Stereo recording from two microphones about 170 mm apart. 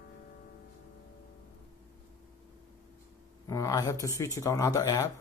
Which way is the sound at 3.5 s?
20° left (ahead or behind).